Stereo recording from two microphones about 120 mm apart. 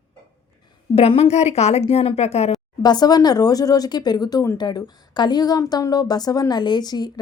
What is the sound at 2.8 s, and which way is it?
A woman's voice, 35° left (ahead or behind).